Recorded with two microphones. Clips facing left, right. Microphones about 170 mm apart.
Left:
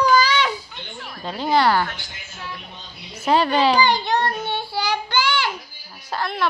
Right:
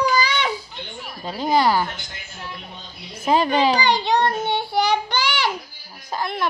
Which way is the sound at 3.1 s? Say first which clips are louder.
Even; 10° right (ahead or behind).